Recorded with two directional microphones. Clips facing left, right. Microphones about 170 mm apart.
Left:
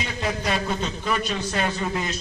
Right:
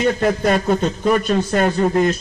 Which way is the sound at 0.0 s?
50° right (ahead or behind).